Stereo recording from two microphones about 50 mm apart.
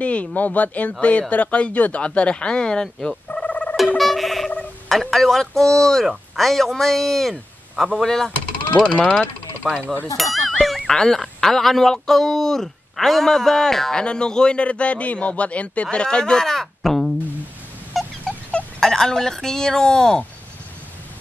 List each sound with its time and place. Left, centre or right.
0.0 s a man's voice: left
3.4 s music: left
4.0 s a sound: centre
4.8 s speech: centre
8.8 s a man's voice: centre
9.7 s a sound: centre
10.9 s a man's voice: centre
17.9 s a sound: centre
18.8 s speech: centre